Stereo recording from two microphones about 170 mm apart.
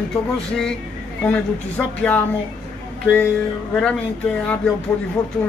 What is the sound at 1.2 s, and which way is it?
Speech, 10° left (ahead or behind).